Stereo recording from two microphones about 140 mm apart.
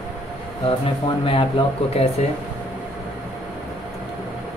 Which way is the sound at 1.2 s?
40° left (ahead or behind).